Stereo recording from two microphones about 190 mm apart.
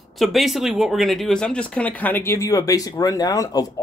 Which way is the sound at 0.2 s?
Centre (ahead or behind).